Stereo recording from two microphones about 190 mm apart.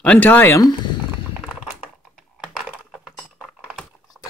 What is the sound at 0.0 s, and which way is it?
Speech, 5° left (ahead or behind).